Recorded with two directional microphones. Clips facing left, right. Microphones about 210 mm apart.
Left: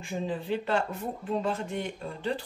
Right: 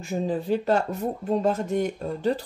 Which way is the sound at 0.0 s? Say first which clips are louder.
Right 6 dB; 45° right (ahead or behind).